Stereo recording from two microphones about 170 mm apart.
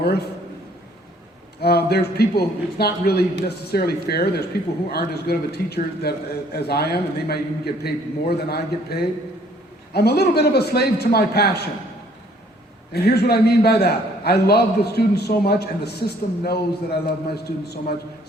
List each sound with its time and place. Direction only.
1.6 s a man's voice: 70° left (ahead or behind)
12.9 s a man's voice: 70° left (ahead or behind)